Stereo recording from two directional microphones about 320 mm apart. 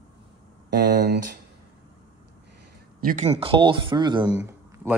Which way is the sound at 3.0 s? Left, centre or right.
Right.